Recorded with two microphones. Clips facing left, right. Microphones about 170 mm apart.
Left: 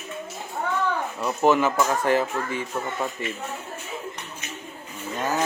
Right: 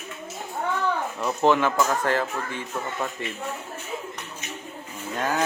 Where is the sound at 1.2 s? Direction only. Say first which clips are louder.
Left 1 dB; 10° left (ahead or behind).